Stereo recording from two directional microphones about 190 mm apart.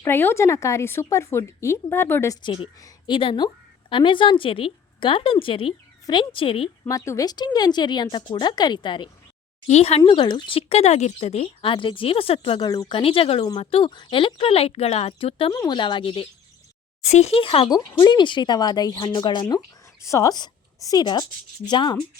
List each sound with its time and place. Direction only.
0.0 s a woman's voice: 10° left (ahead or behind); by 6.7 s 30° left (ahead or behind)
6.8 s speech: 15° left (ahead or behind)
9.6 s speech: 35° left (ahead or behind)
10.0 s speech: 25° left (ahead or behind)